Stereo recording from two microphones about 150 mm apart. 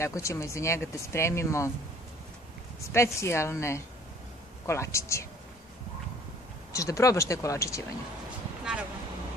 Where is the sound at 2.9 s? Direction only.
20° left (ahead or behind).